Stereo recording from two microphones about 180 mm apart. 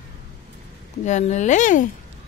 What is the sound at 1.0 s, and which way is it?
Speech, 40° left (ahead or behind).